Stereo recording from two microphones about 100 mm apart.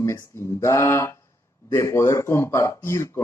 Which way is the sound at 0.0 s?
25° left (ahead or behind).